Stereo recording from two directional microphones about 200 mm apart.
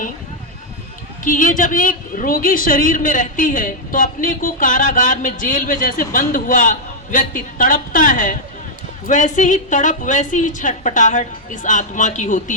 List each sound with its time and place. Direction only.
1.2 s a woman's voice: 40° left (ahead or behind)